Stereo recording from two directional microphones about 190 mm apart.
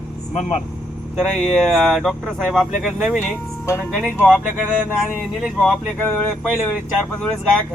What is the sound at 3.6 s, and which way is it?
Speech, 10° left (ahead or behind).